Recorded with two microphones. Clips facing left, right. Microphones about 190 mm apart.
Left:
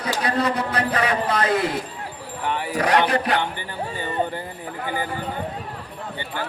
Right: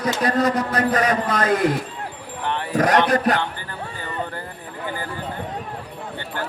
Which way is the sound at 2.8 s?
45° right (ahead or behind).